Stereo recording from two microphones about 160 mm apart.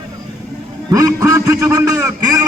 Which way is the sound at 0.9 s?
20° right (ahead or behind).